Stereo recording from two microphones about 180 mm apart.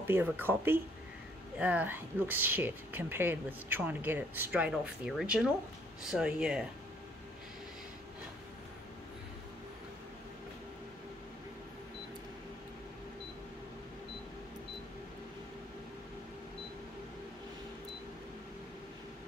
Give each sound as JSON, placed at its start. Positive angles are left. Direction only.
{"t": 0.0, "sound": "speech", "side_deg": -10}